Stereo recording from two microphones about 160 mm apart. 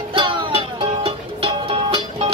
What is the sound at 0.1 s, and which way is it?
Music, 30° right (ahead or behind).